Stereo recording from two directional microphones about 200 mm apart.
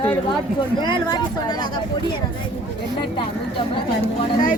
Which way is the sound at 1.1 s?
20° left (ahead or behind).